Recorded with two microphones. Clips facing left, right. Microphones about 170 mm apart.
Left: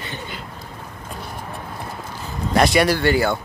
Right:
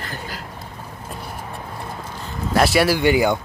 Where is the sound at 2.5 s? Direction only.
5° right (ahead or behind).